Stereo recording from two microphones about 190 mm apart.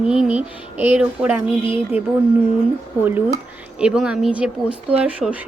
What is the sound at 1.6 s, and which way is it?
Speech, 25° left (ahead or behind).